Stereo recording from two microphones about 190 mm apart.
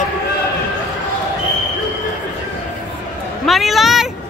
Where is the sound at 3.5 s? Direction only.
Centre (ahead or behind).